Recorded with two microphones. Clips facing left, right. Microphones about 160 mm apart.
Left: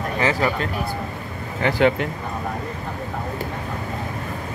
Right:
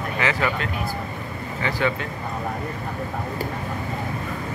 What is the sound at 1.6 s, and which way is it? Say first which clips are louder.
Speech: left 6 dB; 65° left (ahead or behind).